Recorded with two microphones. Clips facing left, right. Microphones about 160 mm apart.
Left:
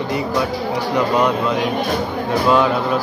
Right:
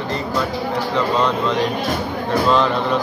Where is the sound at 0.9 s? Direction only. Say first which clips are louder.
Left 3 dB; 10° left (ahead or behind).